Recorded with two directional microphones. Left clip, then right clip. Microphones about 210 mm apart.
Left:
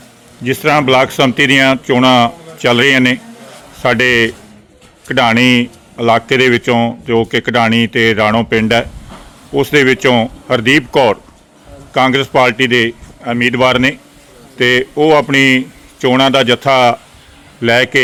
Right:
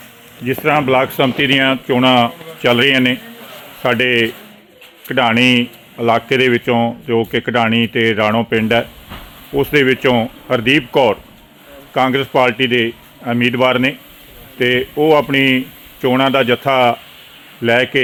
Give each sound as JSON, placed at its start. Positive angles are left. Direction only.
{"t": 0.4, "sound": "a man's voice", "side_deg": 20}